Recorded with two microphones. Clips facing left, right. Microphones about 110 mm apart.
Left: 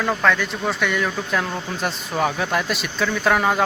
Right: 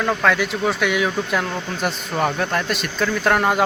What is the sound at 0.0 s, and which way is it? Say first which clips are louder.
Speech: right 1 dB; 5° right (ahead or behind).